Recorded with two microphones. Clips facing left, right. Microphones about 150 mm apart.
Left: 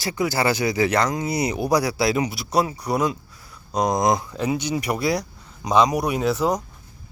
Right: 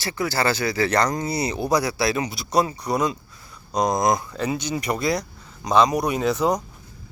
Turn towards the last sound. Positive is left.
turn(degrees=5)  # may be behind; listen again after turning